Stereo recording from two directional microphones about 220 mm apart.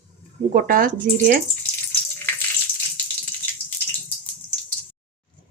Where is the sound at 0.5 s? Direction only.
40° right (ahead or behind).